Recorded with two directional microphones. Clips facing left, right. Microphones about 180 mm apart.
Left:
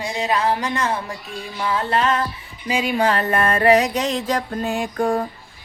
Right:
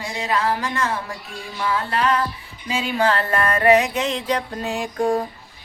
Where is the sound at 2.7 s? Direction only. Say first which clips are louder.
Left 1 dB; 15° left (ahead or behind); by 4.9 s 55° left (ahead or behind).